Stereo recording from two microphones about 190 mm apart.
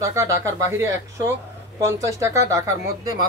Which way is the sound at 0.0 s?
15° right (ahead or behind).